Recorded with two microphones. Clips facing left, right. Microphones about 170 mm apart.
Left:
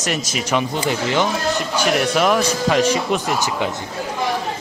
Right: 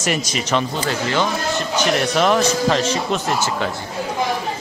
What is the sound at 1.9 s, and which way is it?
A man's voice, 5° left (ahead or behind).